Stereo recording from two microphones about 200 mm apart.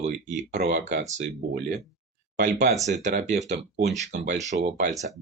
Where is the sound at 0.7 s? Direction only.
40° right (ahead or behind).